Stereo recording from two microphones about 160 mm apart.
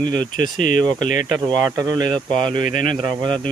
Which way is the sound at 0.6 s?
55° left (ahead or behind).